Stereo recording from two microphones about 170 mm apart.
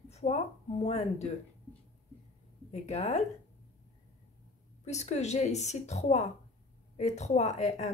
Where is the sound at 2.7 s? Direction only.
40° left (ahead or behind).